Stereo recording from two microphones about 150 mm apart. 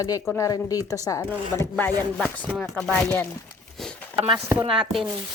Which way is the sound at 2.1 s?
5° left (ahead or behind).